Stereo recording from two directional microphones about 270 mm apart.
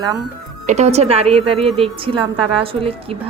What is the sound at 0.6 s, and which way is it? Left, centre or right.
A woman's voice, right.